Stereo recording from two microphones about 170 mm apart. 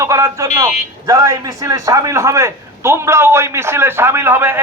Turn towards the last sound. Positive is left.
turn(degrees=-15)  # may be behind; listen again after turning